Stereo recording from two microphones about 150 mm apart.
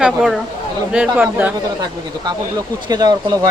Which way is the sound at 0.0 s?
5° right (ahead or behind).